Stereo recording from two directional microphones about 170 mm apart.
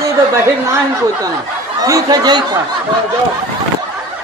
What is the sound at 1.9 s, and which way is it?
Speech, 20° right (ahead or behind).